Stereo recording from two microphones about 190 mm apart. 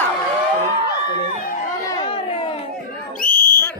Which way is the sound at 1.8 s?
25° left (ahead or behind).